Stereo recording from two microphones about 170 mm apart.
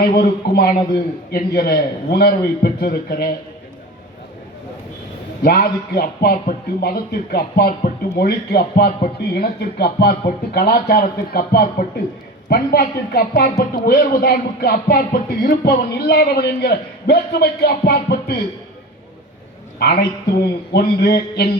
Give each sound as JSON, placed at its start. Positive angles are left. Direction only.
{"t": 0.0, "sound": "speech", "side_deg": 65}
{"t": 5.4, "sound": "speech", "side_deg": 70}
{"t": 19.8, "sound": "speech", "side_deg": 70}